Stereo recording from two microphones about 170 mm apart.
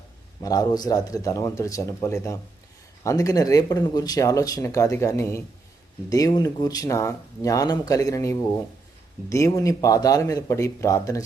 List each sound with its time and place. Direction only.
0.4 s speech: 20° left (ahead or behind)